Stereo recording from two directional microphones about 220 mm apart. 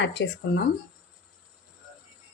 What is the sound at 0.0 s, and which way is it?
Speech, 50° left (ahead or behind).